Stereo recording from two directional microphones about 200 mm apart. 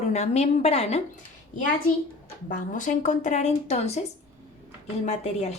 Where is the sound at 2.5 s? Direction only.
40° left (ahead or behind).